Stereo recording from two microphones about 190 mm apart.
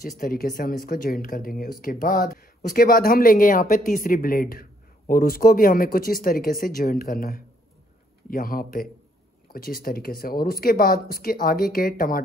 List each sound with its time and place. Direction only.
0.0 s speech: 50° left (ahead or behind)